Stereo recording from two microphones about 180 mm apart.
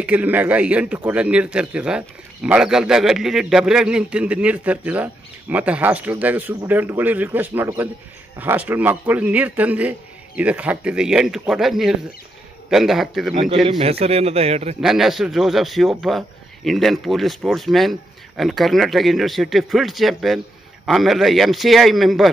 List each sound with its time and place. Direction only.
0.0 s a man's voice: 10° right (ahead or behind)
13.7 s a man's voice: 35° right (ahead or behind)
14.8 s a man's voice: centre (ahead or behind)